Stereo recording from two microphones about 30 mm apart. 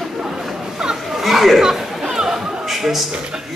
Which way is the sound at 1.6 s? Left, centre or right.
Centre.